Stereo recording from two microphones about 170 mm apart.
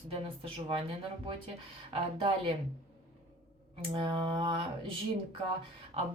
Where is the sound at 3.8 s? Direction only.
35° right (ahead or behind).